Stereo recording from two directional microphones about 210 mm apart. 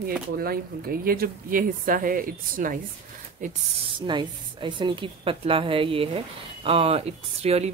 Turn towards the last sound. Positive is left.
turn(degrees=-30)  # may be behind; listen again after turning